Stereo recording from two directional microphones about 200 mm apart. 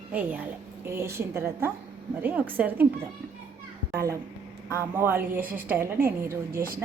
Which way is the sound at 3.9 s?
15° right (ahead or behind).